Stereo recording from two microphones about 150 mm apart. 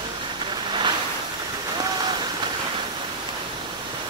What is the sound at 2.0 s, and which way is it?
Rain on surface, 30° right (ahead or behind).